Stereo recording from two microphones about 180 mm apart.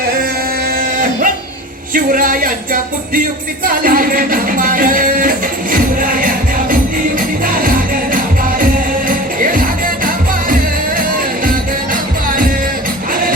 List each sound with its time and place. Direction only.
1.9 s music: 50° right (ahead or behind)